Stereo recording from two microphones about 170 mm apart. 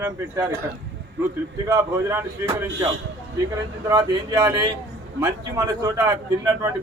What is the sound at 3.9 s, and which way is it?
A man's voice, 20° right (ahead or behind).